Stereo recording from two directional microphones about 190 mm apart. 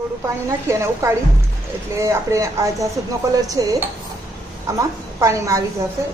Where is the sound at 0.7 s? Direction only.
15° right (ahead or behind).